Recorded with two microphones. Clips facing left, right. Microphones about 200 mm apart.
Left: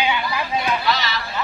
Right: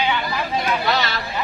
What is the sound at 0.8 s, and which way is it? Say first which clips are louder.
Speech: right 1 dB; 55° right (ahead or behind).